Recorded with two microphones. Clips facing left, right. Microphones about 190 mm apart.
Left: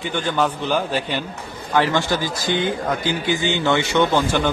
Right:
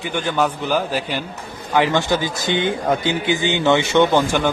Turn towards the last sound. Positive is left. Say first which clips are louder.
# right 2 dB
turn(degrees=-15)  # may be behind; listen again after turning